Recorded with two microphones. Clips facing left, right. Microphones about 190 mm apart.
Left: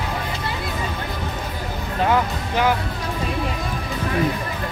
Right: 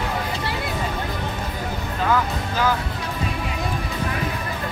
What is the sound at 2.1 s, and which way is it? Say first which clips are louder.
Music: even; 20° left (ahead or behind).